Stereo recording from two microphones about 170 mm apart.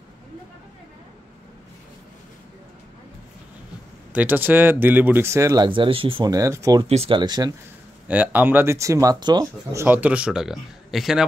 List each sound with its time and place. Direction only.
4.1 s speech: 10° right (ahead or behind)
6.9 s speech: 35° right (ahead or behind)
8.1 s speech: 10° right (ahead or behind)